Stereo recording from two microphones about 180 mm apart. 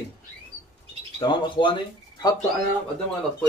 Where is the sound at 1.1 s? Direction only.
25° left (ahead or behind).